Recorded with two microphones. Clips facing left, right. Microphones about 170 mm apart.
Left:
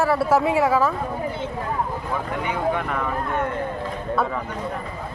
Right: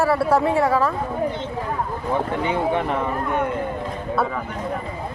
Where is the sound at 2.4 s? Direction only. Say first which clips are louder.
Right 1 dB; 25° right (ahead or behind).